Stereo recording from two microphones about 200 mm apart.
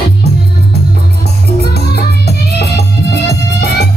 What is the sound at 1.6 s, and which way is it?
Music, 55° left (ahead or behind).